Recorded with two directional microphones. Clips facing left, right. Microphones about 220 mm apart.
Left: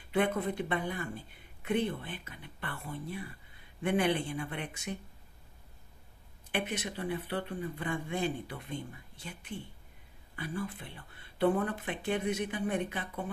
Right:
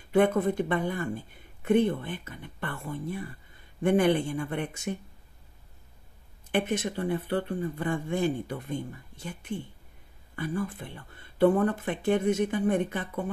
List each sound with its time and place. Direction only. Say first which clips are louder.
0.1 s speech: right 7 dB; 45° right (ahead or behind)
6.5 s speech: right 7 dB; 45° right (ahead or behind)